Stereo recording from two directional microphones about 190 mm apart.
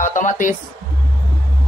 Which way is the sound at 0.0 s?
40° left (ahead or behind).